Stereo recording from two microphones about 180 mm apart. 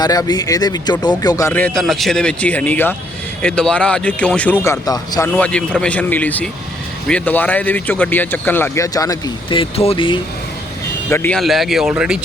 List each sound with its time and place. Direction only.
0.0 s speech: 20° left (ahead or behind)
4.6 s speech: 20° left (ahead or behind)
5.4 s speech: 5° left (ahead or behind); by 10.2 s 30° left (ahead or behind)
11.1 s speech: 10° left (ahead or behind)
11.3 s speech: centre (ahead or behind)